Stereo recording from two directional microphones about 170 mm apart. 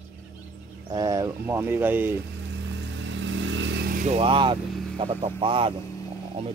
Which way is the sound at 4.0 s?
40° right (ahead or behind).